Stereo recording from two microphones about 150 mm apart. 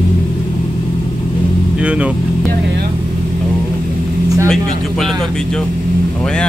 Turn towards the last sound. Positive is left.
turn(degrees=5)  # may be behind; listen again after turning